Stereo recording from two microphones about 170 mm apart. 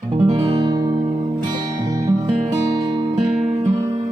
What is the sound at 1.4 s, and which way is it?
Music, 20° right (ahead or behind).